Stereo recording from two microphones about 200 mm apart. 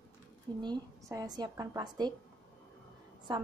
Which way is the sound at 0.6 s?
20° right (ahead or behind).